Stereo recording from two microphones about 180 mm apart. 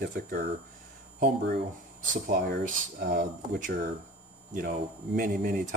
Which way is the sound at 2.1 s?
45° right (ahead or behind).